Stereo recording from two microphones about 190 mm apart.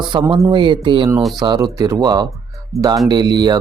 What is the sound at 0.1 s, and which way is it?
Speech, 25° right (ahead or behind).